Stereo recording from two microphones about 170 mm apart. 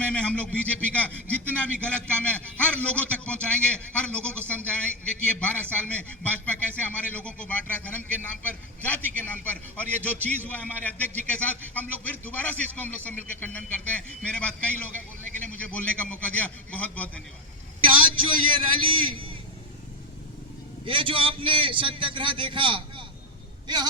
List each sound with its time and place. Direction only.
0.0 s a man's voice: 10° left (ahead or behind)
18.9 s a man's voice: 30° right (ahead or behind)
20.8 s a man's voice: 30° right (ahead or behind)